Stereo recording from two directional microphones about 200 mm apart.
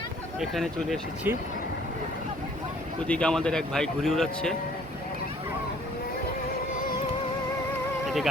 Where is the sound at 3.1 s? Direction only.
5° left (ahead or behind).